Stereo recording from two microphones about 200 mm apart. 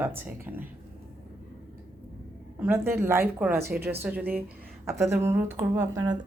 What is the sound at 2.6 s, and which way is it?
A woman's voice, 10° right (ahead or behind).